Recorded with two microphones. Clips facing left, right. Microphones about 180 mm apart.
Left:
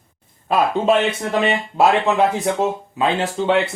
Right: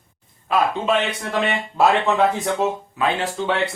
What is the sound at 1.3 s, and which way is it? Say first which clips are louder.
Speech: left 3 dB; 20° left (ahead or behind).